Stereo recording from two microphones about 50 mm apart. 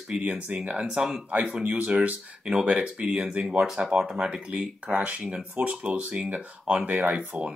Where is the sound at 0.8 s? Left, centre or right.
Centre.